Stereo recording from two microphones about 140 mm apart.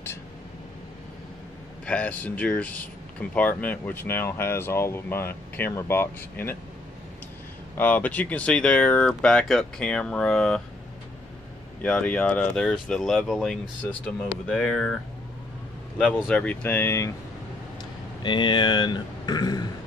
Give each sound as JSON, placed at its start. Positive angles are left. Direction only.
{"t": 1.9, "sound": "speech", "side_deg": 10}
{"t": 7.7, "sound": "speech", "side_deg": 10}
{"t": 11.8, "sound": "speech", "side_deg": 10}
{"t": 16.2, "sound": "speech", "side_deg": 5}
{"t": 18.2, "sound": "speech", "side_deg": 35}